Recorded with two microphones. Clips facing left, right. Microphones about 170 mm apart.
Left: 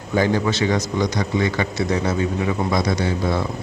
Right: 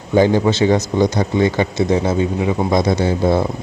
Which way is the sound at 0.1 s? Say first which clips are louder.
Right 6 dB; 25° right (ahead or behind).